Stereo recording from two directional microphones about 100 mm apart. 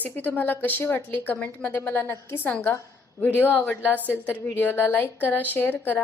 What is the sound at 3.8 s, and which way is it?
Speech, 15° right (ahead or behind).